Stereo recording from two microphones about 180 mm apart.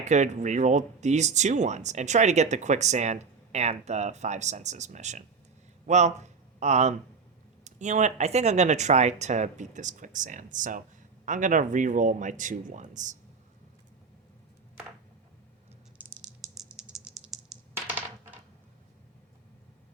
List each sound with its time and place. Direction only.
0.0 s speech: 40° right (ahead or behind)
16.0 s rattle: 10° right (ahead or behind)
17.7 s coin: 10° right (ahead or behind)